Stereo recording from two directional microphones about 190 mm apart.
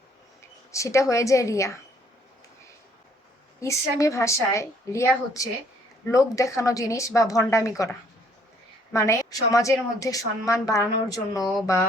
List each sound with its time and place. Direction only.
0.7 s a woman's voice: 15° left (ahead or behind)
3.6 s a woman's voice: 15° left (ahead or behind)